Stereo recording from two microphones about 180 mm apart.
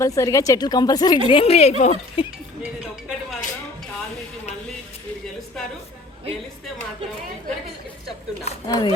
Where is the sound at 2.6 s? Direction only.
5° right (ahead or behind).